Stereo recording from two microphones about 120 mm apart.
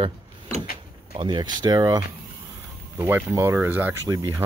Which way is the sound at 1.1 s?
40° right (ahead or behind).